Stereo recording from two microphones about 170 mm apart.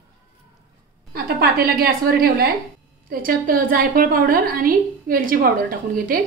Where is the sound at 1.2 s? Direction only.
65° right (ahead or behind).